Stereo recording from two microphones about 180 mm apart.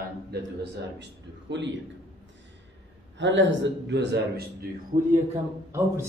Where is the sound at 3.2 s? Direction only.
85° right; by 4.7 s 70° right (ahead or behind).